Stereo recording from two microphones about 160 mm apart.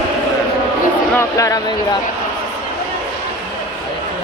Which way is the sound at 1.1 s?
20° left (ahead or behind).